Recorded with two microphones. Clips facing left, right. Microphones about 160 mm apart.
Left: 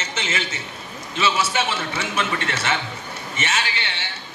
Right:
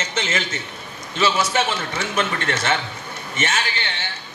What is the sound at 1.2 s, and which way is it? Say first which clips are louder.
A man's voice: right 2 dB; 35° right (ahead or behind).